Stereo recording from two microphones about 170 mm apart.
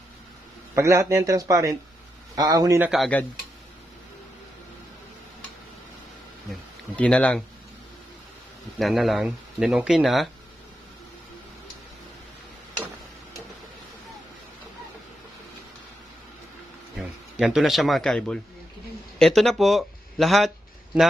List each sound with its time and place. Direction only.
0.8 s speech: 15° right (ahead or behind)
2.9 s speech: 5° left (ahead or behind)
6.5 s speech: 5° left (ahead or behind)
8.8 s speech: centre (ahead or behind)
17.3 s speech: 5° right (ahead or behind)